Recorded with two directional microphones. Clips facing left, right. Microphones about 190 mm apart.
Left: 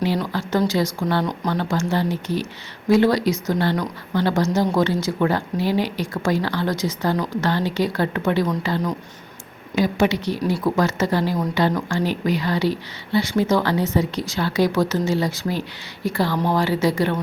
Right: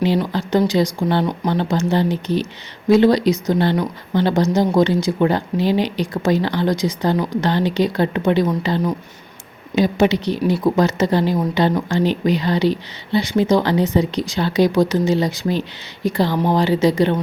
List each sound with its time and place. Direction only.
0.0 s speech: 20° right (ahead or behind)